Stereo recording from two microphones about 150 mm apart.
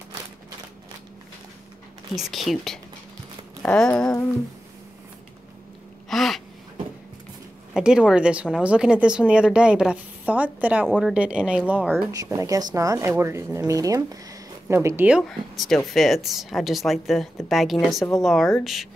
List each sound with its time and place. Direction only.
2.1 s speech: centre (ahead or behind)
6.0 s gasp: centre (ahead or behind)
7.7 s speech: 5° right (ahead or behind)
12.1 s speech: 25° right (ahead or behind)
15.6 s speech: centre (ahead or behind)